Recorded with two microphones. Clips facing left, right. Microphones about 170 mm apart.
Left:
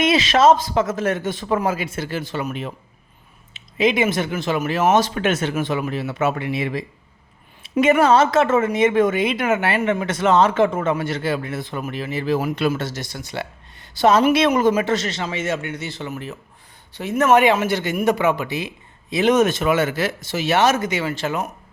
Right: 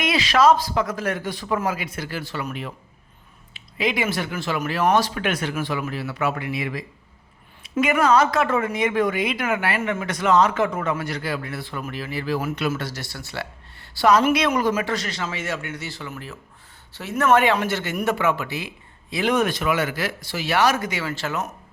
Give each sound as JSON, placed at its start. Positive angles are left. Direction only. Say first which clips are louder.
{"t": 0.0, "sound": "a woman's voice", "louder": "left 3 dB", "side_deg": 25}